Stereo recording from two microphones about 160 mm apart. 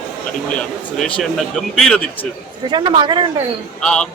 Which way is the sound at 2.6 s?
30° right (ahead or behind).